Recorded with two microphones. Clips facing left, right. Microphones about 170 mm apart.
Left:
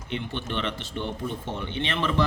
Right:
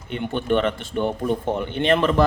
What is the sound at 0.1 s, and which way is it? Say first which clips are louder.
Speech: right 9 dB; 50° right (ahead or behind).